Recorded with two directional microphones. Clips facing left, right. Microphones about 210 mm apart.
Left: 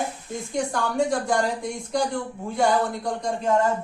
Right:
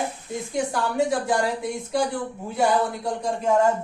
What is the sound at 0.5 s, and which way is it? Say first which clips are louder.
A woman's voice: even; 5° right (ahead or behind).